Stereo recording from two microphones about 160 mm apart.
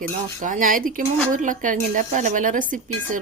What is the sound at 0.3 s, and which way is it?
Speech, 50° right (ahead or behind).